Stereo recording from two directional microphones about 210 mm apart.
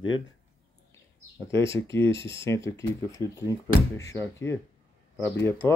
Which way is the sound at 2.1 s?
25° right (ahead or behind).